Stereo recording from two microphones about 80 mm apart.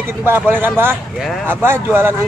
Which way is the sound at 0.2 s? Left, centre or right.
Right.